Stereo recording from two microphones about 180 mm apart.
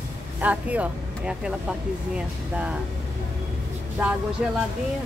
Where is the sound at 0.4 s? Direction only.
10° right (ahead or behind).